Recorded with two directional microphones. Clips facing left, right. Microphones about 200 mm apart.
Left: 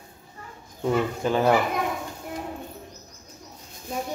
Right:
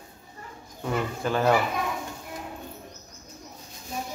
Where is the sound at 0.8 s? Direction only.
15° left (ahead or behind).